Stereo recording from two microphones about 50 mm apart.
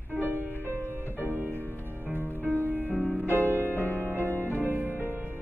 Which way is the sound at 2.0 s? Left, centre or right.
Right.